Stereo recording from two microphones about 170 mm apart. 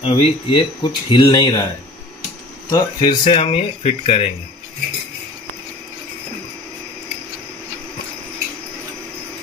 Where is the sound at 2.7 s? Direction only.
30° left (ahead or behind).